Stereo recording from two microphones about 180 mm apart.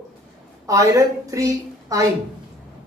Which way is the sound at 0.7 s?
20° right (ahead or behind).